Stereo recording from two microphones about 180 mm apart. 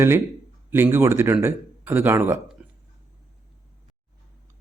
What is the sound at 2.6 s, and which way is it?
Burping, 5° right (ahead or behind).